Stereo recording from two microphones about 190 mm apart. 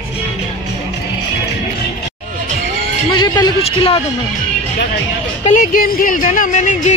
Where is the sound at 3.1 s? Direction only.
20° left (ahead or behind).